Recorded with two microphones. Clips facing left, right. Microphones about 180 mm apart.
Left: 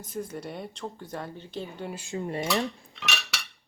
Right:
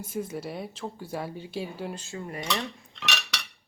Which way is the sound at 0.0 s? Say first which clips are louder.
Right 2 dB; 5° right (ahead or behind).